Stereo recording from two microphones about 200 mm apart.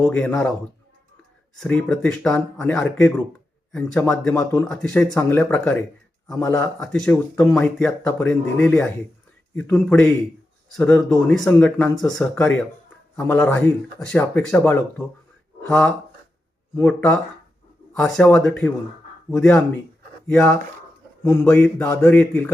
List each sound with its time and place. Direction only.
0.0 s speech: 5° left (ahead or behind)
1.5 s speech: 5° left (ahead or behind)